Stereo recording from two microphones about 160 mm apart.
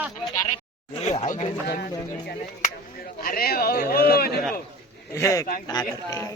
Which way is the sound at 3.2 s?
65° left (ahead or behind).